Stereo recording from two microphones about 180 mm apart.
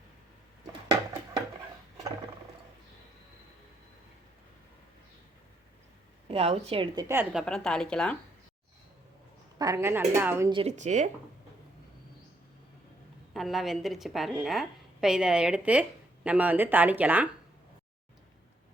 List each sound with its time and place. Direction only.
6.2 s a woman's voice: 35° right (ahead or behind)
6.9 s speech: 15° right (ahead or behind)
7.3 s a woman's voice: 5° left (ahead or behind)
9.6 s a woman's voice: 15° right (ahead or behind)
10.5 s speech: 35° right (ahead or behind)
13.3 s a woman's voice: centre (ahead or behind)